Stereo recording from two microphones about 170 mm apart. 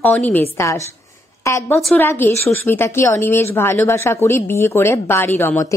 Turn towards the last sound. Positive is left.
turn(degrees=15)  # may be behind; listen again after turning